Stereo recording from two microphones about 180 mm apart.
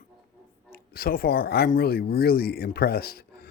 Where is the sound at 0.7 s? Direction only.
60° left (ahead or behind).